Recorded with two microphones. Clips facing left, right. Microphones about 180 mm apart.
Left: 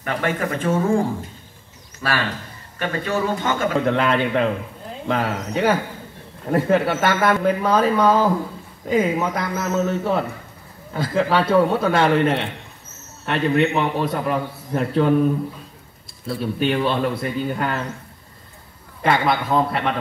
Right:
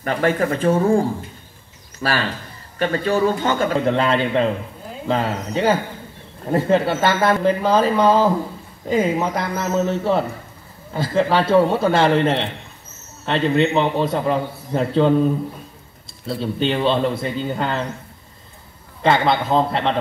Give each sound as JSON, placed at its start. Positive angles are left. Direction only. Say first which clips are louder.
{"t": 0.0, "sound": "a man's voice", "louder": "right 4 dB", "side_deg": -35}
{"t": 16.6, "sound": "a man's voice", "louder": "right 2 dB", "side_deg": -25}
{"t": 19.0, "sound": "a man's voice", "louder": "right 2 dB", "side_deg": -25}